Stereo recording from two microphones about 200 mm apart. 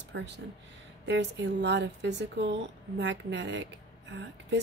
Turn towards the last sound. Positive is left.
turn(degrees=-60)  # may be behind; listen again after turning